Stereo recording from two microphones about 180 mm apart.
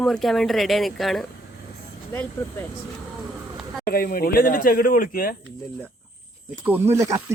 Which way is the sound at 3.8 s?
50° left (ahead or behind).